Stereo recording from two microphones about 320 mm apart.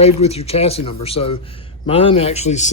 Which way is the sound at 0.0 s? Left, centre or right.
Centre.